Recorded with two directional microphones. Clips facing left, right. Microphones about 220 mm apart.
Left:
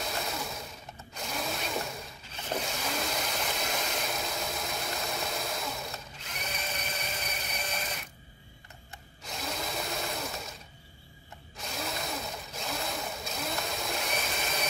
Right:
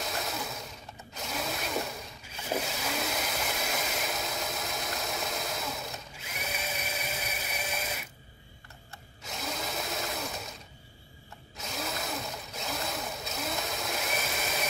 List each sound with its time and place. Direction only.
0.0 s sewing machine: centre (ahead or behind)
1.1 s a sound: centre (ahead or behind)
9.2 s drill: centre (ahead or behind)
11.5 s sewing machine: centre (ahead or behind)